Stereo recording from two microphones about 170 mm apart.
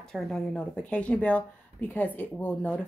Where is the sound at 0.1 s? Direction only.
Centre (ahead or behind).